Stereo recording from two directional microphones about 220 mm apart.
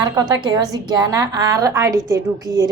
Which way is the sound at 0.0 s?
20° right (ahead or behind).